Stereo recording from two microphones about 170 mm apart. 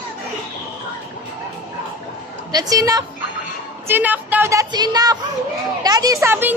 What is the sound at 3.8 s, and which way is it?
A woman's voice, 10° right (ahead or behind).